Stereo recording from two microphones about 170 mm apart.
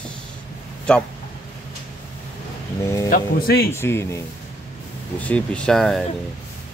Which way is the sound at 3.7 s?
15° left (ahead or behind).